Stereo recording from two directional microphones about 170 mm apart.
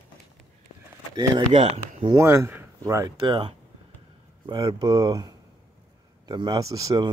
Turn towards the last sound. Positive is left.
turn(degrees=-20)  # may be behind; listen again after turning